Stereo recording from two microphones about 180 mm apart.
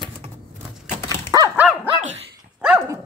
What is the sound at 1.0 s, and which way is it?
Dog, 20° right (ahead or behind).